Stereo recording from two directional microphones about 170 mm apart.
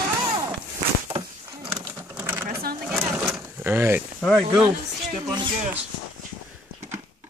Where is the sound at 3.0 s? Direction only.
15° right (ahead or behind).